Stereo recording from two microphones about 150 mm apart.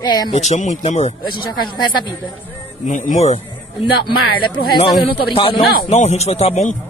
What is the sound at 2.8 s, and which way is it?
Speech, 55° left (ahead or behind).